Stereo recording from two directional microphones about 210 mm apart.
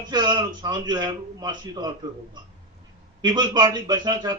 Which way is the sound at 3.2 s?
20° right (ahead or behind).